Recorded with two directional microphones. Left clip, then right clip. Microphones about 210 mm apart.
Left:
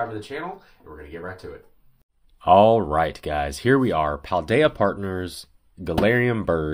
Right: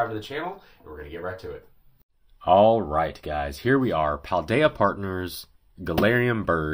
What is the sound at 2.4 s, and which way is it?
Speech, 25° left (ahead or behind).